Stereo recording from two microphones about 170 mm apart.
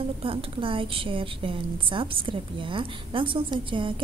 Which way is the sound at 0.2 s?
30° right (ahead or behind).